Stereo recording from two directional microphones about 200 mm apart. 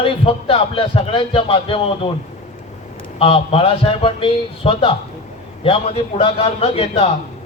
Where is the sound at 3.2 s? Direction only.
25° left (ahead or behind).